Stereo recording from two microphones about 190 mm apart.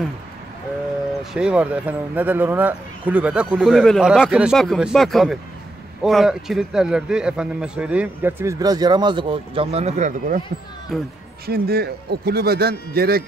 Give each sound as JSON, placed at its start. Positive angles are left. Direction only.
{"t": 1.3, "sound": "a man's voice", "side_deg": -5}
{"t": 10.9, "sound": "speech", "side_deg": 0}
{"t": 11.4, "sound": "a man's voice", "side_deg": -55}